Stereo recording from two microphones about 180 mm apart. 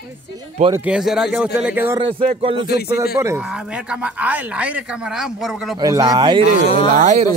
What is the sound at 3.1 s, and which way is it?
Speech, 15° right (ahead or behind).